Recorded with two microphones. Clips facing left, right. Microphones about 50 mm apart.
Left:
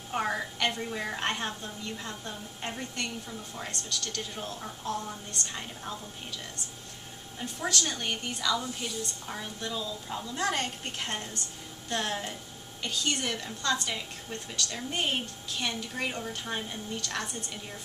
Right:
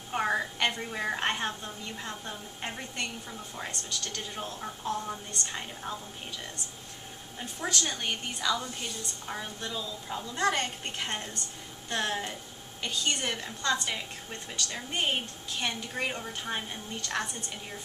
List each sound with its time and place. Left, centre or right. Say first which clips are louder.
0.1 s a woman's voice: right 2 dB; centre
7.6 s a woman's voice: even; centre